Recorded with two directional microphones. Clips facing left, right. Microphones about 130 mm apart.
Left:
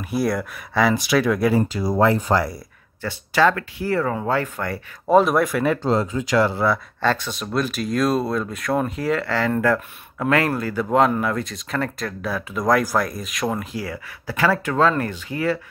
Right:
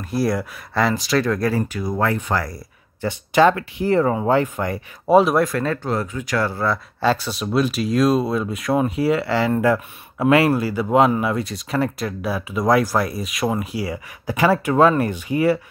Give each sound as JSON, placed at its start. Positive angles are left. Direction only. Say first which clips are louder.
{"t": 0.0, "sound": "speech", "louder": "right 1 dB", "side_deg": 0}
{"t": 1.5, "sound": "speech", "louder": "left 3 dB", "side_deg": 30}
{"t": 3.0, "sound": "speech", "louder": "right 3 dB", "side_deg": -20}
{"t": 5.8, "sound": "speech", "louder": "left 3 dB", "side_deg": 25}
{"t": 7.0, "sound": "speech", "louder": "right 2 dB", "side_deg": -10}